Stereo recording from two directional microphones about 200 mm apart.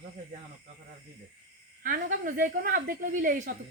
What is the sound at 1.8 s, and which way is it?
A woman's voice, 45° right (ahead or behind).